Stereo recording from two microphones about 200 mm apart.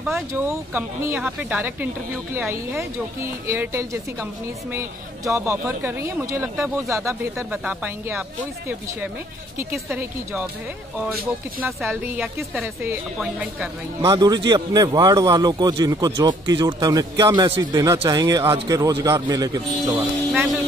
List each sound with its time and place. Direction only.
0.3 s speech: 15° right (ahead or behind)
11.6 s speech: 10° right (ahead or behind)
14.0 s speech: 20° right (ahead or behind)